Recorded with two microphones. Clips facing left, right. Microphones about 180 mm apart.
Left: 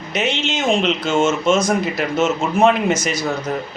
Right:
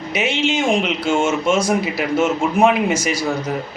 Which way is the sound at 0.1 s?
10° right (ahead or behind).